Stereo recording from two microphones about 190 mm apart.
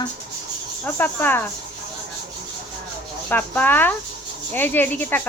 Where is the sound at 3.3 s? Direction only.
10° left (ahead or behind).